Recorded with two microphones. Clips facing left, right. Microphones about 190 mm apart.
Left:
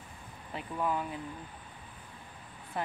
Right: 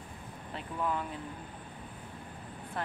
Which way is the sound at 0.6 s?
5° left (ahead or behind).